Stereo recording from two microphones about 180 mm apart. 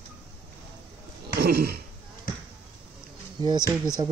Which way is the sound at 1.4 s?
60° right (ahead or behind).